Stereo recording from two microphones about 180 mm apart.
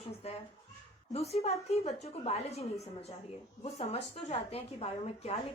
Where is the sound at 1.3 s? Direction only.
35° left (ahead or behind).